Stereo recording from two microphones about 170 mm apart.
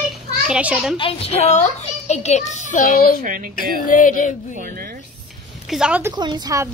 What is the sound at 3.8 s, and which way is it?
Speech, 50° left (ahead or behind).